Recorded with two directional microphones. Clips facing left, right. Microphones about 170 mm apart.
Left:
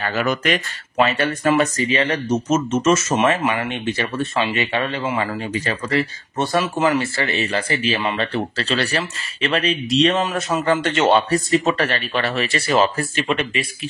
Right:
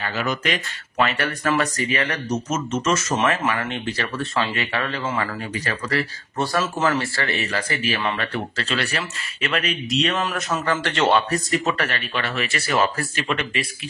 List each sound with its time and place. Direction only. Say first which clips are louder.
0.0 s speech: left 4 dB; 55° left (ahead or behind)
0.9 s speech: left 4 dB; 25° left (ahead or behind)